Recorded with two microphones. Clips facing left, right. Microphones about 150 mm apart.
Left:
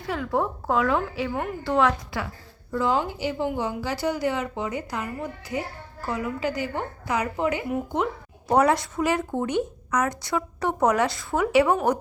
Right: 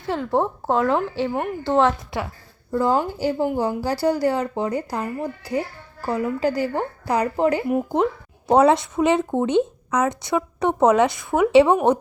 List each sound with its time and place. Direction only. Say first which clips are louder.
0.1 s speech: right 4 dB; 25° right (ahead or behind)
2.7 s a woman's voice: right 4 dB; 35° right (ahead or behind)
8.4 s speech: right 5 dB; 25° right (ahead or behind)